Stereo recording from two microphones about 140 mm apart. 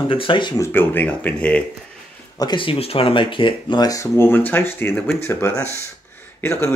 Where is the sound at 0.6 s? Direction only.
15° left (ahead or behind).